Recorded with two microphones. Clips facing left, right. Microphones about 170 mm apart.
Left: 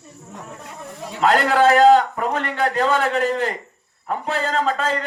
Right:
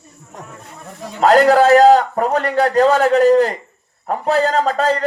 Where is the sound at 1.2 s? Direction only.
40° right (ahead or behind).